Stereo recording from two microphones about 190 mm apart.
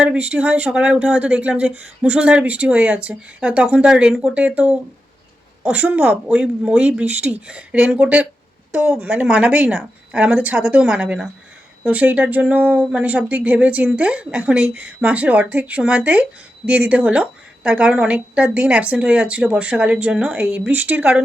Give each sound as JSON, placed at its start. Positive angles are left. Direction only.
{"t": 0.0, "sound": "a woman's voice", "side_deg": -5}